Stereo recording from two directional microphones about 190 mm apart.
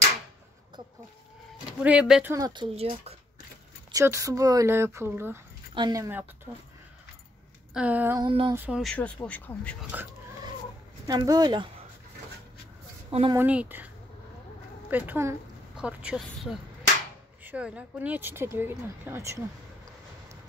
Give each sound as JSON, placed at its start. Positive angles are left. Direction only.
{"t": 1.8, "sound": "speech", "side_deg": -5}
{"t": 2.3, "sound": "speech", "side_deg": -20}
{"t": 3.9, "sound": "speech", "side_deg": -15}
{"t": 7.7, "sound": "speech", "side_deg": -10}
{"t": 8.2, "sound": "speech", "side_deg": -25}
{"t": 8.5, "sound": "speech", "side_deg": -5}
{"t": 11.1, "sound": "speech", "side_deg": -20}
{"t": 13.3, "sound": "speech", "side_deg": -10}
{"t": 14.9, "sound": "speech", "side_deg": -10}